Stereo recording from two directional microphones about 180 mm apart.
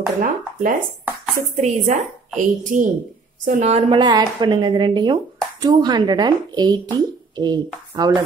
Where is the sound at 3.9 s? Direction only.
25° right (ahead or behind).